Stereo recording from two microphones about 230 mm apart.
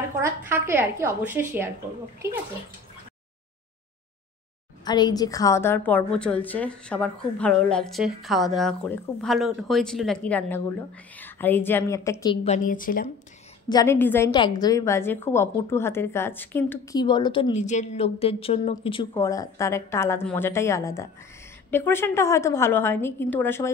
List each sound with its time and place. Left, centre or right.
0.2 s a woman's voice: centre
4.8 s a woman's voice: centre
12.4 s a woman's voice: left
13.7 s a woman's voice: centre